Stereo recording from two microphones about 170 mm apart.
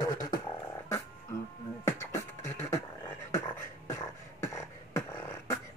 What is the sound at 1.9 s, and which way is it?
Beatboxing, 15° left (ahead or behind).